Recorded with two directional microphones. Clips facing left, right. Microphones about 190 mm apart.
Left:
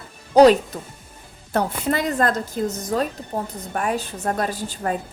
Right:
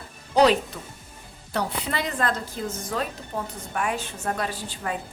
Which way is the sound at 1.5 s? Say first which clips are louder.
Left 6 dB; 45° left (ahead or behind).